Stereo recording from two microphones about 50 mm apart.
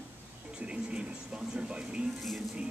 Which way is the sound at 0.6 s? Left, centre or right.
Right.